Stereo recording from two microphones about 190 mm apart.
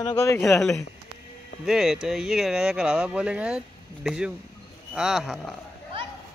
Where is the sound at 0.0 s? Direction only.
20° left (ahead or behind).